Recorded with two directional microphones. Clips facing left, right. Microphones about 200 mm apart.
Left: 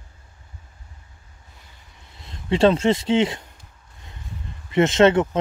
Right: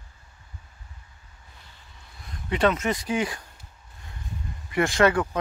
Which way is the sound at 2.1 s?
25° left (ahead or behind).